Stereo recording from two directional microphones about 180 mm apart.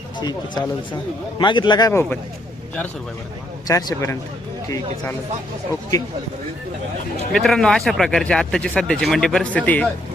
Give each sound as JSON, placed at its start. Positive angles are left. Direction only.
{"t": 0.2, "sound": "a man's voice", "side_deg": 25}
{"t": 1.9, "sound": "speech", "side_deg": 15}
{"t": 3.7, "sound": "a man's voice", "side_deg": 20}
{"t": 7.3, "sound": "speech", "side_deg": 5}